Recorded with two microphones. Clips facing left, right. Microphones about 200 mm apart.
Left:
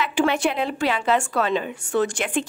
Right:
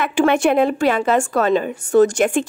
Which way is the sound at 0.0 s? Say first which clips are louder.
Right 5 dB; 50° right (ahead or behind).